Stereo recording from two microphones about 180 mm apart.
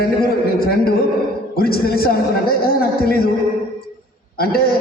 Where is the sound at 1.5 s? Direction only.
55° left (ahead or behind).